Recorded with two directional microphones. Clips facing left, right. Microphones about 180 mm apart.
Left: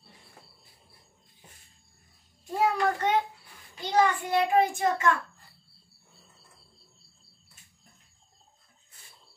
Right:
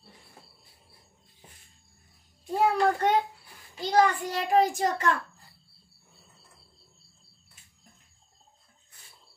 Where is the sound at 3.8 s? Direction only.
40° right (ahead or behind).